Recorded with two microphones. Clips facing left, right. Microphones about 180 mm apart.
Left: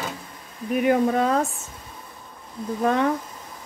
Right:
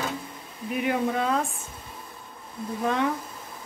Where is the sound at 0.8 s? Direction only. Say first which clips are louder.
Left 6 dB; 45° left (ahead or behind).